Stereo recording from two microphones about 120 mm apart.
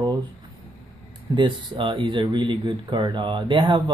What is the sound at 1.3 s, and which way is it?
Speech, 45° right (ahead or behind).